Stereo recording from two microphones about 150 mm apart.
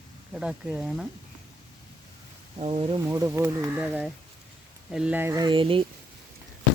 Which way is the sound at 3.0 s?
20° right (ahead or behind).